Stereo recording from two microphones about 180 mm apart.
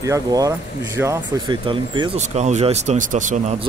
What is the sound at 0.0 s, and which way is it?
Speech, 20° right (ahead or behind).